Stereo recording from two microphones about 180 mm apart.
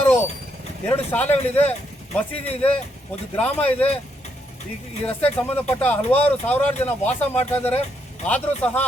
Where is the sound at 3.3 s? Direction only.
10° left (ahead or behind).